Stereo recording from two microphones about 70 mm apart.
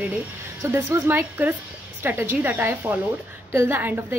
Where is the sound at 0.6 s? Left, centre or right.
Right.